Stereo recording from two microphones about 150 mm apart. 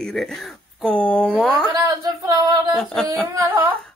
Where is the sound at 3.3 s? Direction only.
15° right (ahead or behind).